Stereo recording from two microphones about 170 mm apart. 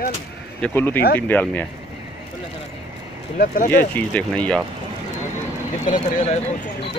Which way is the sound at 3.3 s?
55° left (ahead or behind).